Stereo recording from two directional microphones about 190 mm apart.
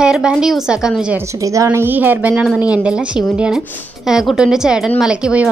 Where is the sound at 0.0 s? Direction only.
5° right (ahead or behind).